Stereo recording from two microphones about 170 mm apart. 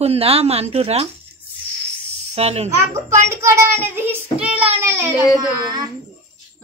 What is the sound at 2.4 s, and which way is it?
Speech, 40° right (ahead or behind).